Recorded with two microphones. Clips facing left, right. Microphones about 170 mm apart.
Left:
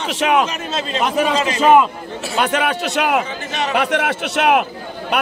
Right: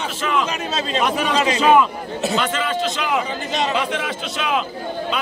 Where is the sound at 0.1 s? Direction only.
70° left (ahead or behind).